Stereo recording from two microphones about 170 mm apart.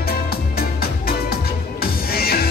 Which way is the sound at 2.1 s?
65° left (ahead or behind).